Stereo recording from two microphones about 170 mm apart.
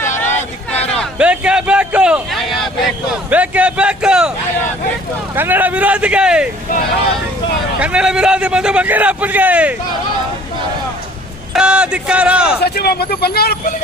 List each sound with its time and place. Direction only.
0.7 s a sound: 5° left (ahead or behind)
1.2 s a sound: 5° right (ahead or behind)
5.3 s a man's voice: 10° right (ahead or behind)
7.8 s a man's voice: 5° right (ahead or behind)
11.5 s a man's voice: 5° right (ahead or behind)
12.6 s speech: 70° left (ahead or behind)